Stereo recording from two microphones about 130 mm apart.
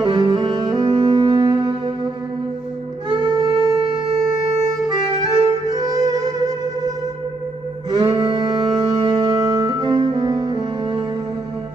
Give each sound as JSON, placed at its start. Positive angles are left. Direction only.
{"t": 0.0, "sound": "music", "side_deg": -35}
{"t": 3.1, "sound": "wind instrument", "side_deg": -35}
{"t": 5.3, "sound": "music", "side_deg": -35}
{"t": 8.0, "sound": "music", "side_deg": -40}